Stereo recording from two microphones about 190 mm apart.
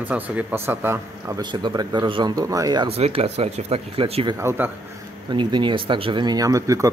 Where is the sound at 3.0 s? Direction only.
35° right (ahead or behind).